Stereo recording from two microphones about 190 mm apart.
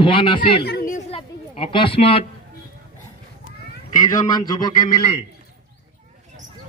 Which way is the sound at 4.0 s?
20° left (ahead or behind).